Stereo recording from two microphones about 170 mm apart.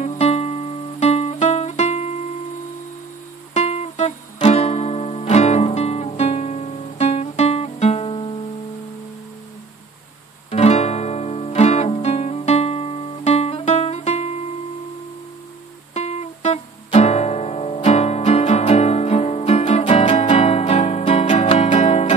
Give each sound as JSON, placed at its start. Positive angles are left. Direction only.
{"t": 0.0, "sound": "music", "side_deg": 40}
{"t": 3.5, "sound": "music", "side_deg": 40}
{"t": 10.5, "sound": "music", "side_deg": 40}
{"t": 15.9, "sound": "music", "side_deg": 40}